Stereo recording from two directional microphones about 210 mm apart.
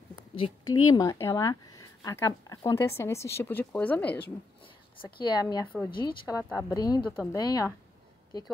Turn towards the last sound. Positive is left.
turn(degrees=15)  # may be behind; listen again after turning